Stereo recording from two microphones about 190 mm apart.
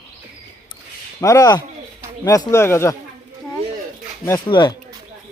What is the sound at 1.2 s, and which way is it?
Speech, 15° left (ahead or behind).